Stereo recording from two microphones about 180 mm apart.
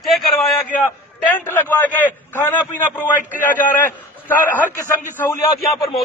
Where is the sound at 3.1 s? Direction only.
50° left (ahead or behind).